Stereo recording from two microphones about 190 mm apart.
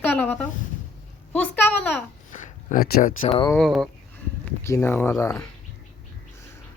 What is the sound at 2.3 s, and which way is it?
Speech, 40° left (ahead or behind).